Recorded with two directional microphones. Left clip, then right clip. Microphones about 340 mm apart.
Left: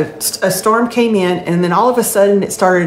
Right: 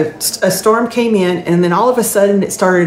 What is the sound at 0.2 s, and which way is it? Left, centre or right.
A woman's voice, centre.